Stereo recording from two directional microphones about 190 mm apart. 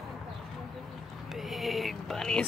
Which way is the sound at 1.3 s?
Centre (ahead or behind).